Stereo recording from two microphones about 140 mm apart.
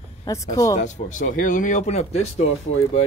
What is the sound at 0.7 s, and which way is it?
Speech, 65° left (ahead or behind).